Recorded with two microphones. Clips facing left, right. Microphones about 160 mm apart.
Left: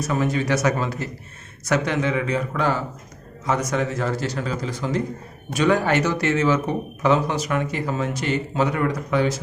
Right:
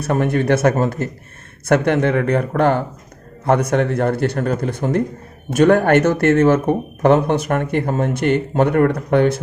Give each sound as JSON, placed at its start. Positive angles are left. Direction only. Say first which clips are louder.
{"t": 0.0, "sound": "speech", "louder": "right 5 dB", "side_deg": -60}